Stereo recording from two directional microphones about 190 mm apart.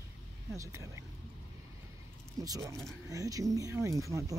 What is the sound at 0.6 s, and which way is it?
Speech, 15° right (ahead or behind).